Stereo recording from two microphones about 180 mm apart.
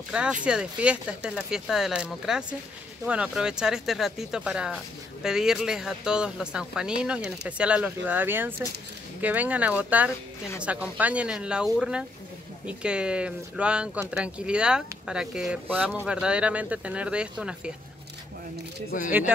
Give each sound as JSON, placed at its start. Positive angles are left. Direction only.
{"t": 0.1, "sound": "speech", "side_deg": -5}
{"t": 18.9, "sound": "speech", "side_deg": 45}